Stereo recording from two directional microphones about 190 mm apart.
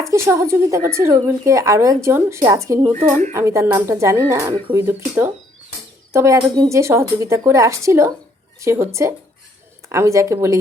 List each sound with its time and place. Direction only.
0.0 s speech: 15° right (ahead or behind)
2.9 s speech: 40° right (ahead or behind)
3.3 s speech: 15° right (ahead or behind)